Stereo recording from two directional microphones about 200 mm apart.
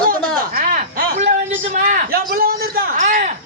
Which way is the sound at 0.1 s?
45° right (ahead or behind).